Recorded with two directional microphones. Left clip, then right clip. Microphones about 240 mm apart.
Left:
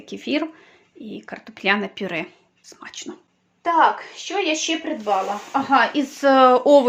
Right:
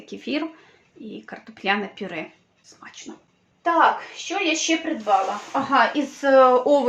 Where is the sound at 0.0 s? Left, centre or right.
Left.